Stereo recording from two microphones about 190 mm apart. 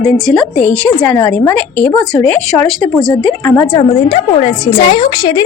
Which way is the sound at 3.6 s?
25° left (ahead or behind).